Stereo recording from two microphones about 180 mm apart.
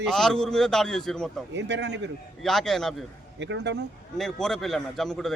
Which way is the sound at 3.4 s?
80° right.